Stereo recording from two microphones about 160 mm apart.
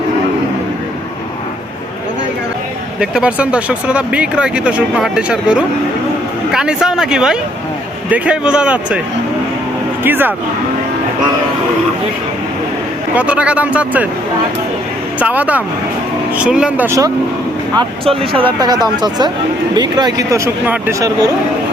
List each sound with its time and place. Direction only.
3.0 s speech: 5° right (ahead or behind)
10.0 s speech: 10° right (ahead or behind)
13.1 s speech: 10° right (ahead or behind)
15.2 s speech: 10° right (ahead or behind)
17.7 s speech: 35° right (ahead or behind); by 21.1 s 15° right (ahead or behind)